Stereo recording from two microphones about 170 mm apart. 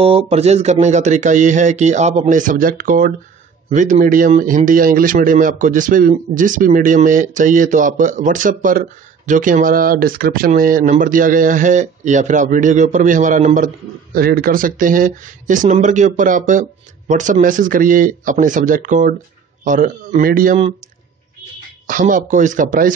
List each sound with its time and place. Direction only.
0.0 s speech: 35° right (ahead or behind)
14.1 s speech: 65° right (ahead or behind)
21.8 s speech: 50° right (ahead or behind)